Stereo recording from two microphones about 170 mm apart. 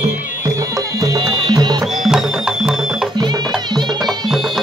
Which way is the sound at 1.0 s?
20° right (ahead or behind).